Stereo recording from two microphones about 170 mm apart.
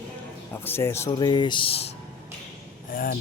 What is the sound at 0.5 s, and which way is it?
Speech, 15° left (ahead or behind).